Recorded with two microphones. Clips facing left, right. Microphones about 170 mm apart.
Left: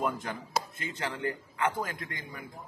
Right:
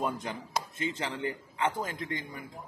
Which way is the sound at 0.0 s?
20° right (ahead or behind).